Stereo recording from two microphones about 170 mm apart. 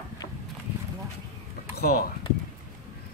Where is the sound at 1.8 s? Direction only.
65° left (ahead or behind).